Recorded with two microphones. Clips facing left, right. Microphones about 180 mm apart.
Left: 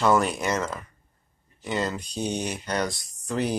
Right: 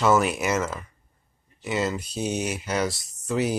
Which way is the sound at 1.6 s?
5° right (ahead or behind).